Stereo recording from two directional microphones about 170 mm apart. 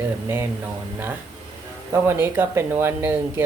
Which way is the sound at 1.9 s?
15° right (ahead or behind).